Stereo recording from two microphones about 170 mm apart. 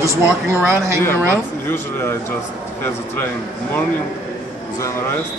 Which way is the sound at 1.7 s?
15° left (ahead or behind).